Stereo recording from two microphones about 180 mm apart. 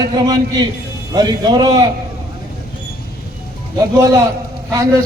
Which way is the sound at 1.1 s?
25° right (ahead or behind).